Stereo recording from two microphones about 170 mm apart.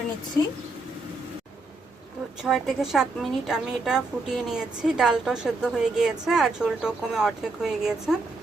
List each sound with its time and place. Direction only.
2.4 s a woman's voice: centre (ahead or behind)